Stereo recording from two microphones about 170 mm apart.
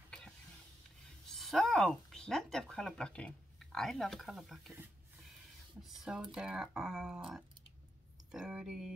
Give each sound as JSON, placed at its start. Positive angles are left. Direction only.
{"t": 1.3, "sound": "speech", "side_deg": 0}
{"t": 5.8, "sound": "speech", "side_deg": 0}
{"t": 8.3, "sound": "speech", "side_deg": -5}